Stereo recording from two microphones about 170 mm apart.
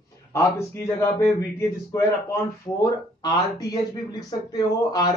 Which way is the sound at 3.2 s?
20° left (ahead or behind).